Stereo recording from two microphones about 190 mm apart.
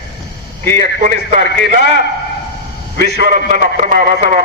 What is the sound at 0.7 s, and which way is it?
A man's voice, 50° right (ahead or behind).